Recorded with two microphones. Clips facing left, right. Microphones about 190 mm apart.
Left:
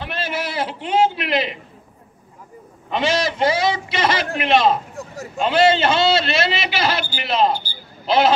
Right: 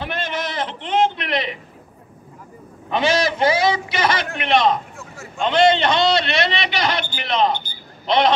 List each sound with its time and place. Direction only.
0.1 s speech: 10° left (ahead or behind)
2.9 s a man's voice: centre (ahead or behind)
4.9 s a sound: 40° left (ahead or behind)
5.4 s a man's voice: 5° left (ahead or behind)